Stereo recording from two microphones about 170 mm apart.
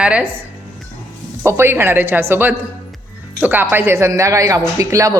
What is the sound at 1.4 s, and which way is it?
A woman's voice, 15° right (ahead or behind).